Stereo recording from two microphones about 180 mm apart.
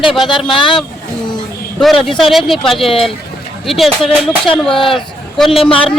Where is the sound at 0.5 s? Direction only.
25° left (ahead or behind).